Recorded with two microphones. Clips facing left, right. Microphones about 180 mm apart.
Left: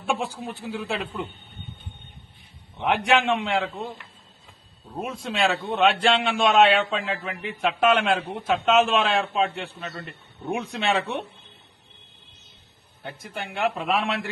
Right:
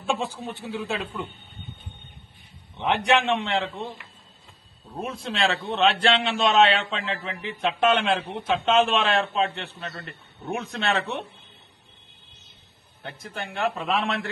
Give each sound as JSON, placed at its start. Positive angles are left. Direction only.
{"t": 0.1, "sound": "a man's voice", "side_deg": 10}
{"t": 2.8, "sound": "a man's voice", "side_deg": 5}
{"t": 13.0, "sound": "a man's voice", "side_deg": 10}